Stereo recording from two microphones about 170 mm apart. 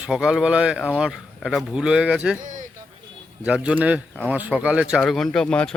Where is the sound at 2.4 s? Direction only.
50° right (ahead or behind).